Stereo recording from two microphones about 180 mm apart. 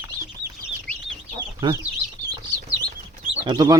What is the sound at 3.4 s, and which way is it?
Speech, 25° right (ahead or behind).